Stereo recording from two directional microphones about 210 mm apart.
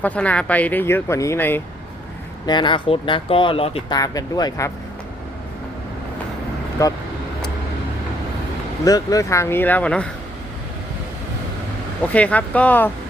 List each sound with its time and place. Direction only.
0.0 s speech: 5° left (ahead or behind)
2.5 s speech: 20° left (ahead or behind)
6.8 s speech: 15° left (ahead or behind)
8.8 s speech: 15° left (ahead or behind)
12.1 s speech: 5° left (ahead or behind)